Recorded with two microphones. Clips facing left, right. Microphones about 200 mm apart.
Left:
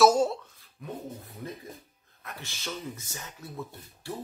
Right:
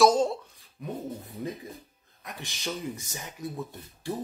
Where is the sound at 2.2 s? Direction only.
15° right (ahead or behind).